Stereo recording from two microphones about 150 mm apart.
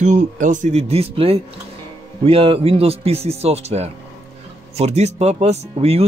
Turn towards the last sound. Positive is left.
turn(degrees=-45)  # may be behind; listen again after turning